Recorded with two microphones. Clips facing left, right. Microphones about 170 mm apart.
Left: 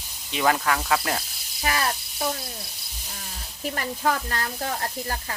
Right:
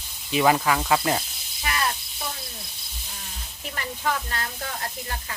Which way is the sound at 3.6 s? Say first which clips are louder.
Left 5 dB; 40° left (ahead or behind).